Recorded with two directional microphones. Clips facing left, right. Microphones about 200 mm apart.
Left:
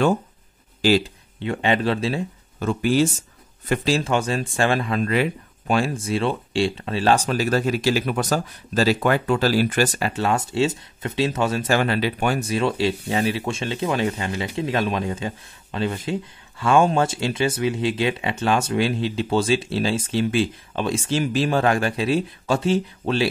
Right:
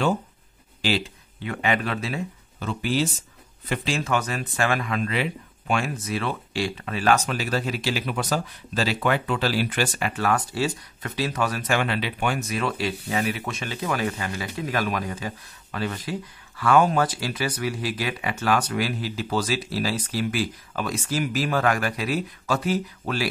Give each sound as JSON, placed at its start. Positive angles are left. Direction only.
{"t": 0.8, "sound": "speech", "side_deg": 45}
{"t": 1.4, "sound": "speech", "side_deg": 30}
{"t": 2.6, "sound": "speech", "side_deg": 45}
{"t": 5.0, "sound": "speech", "side_deg": 45}
{"t": 5.8, "sound": "speech", "side_deg": 30}